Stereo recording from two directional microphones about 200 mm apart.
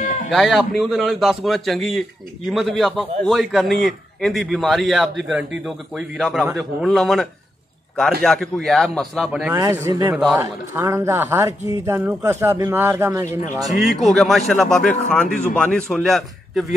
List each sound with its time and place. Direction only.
0.3 s a man's voice: centre (ahead or behind)
9.5 s a man's voice: 15° right (ahead or behind)
13.7 s a man's voice: centre (ahead or behind)